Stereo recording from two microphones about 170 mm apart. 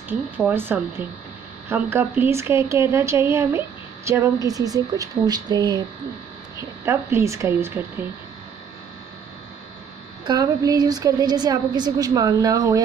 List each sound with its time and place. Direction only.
0.4 s a woman's voice: 10° right (ahead or behind)
6.8 s a woman's voice: 15° right (ahead or behind)
10.2 s a woman's voice: 25° right (ahead or behind)